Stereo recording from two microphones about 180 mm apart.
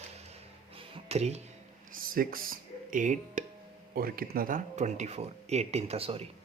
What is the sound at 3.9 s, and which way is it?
Speech, 55° right (ahead or behind).